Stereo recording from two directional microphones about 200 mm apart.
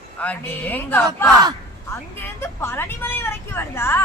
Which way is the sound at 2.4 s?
10° left (ahead or behind).